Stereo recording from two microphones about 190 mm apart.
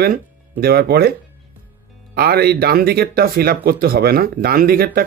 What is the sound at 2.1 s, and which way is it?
Speech, 55° right (ahead or behind).